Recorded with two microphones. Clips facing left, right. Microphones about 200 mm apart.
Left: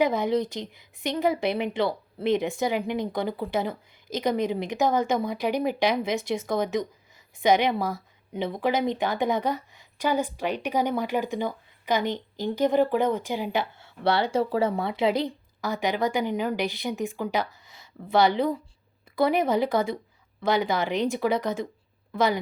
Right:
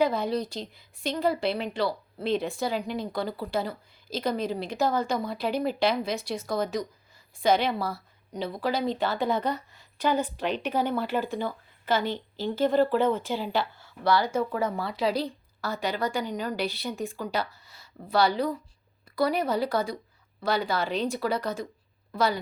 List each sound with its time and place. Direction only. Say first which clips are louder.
0.0 s speech: left 2 dB; 20° left (ahead or behind)